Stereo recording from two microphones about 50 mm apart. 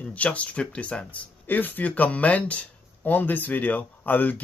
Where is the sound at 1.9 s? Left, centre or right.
Left.